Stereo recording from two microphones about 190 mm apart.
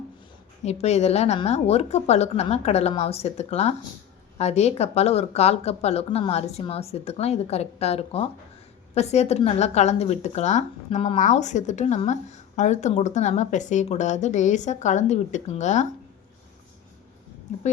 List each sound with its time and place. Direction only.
0.6 s a woman's voice: 35° left (ahead or behind)